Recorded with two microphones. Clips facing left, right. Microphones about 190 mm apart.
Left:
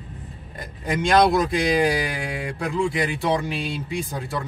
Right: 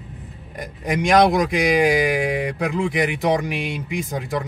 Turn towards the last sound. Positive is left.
turn(degrees=-15)  # may be behind; listen again after turning